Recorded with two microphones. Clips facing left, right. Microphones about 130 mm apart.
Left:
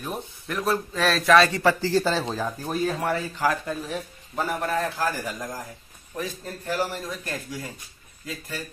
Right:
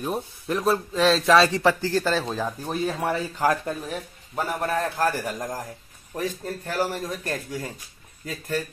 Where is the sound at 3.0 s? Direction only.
35° right (ahead or behind).